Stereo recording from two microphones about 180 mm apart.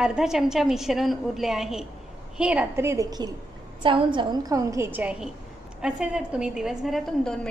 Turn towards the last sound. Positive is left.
turn(degrees=0)  # may be behind; listen again after turning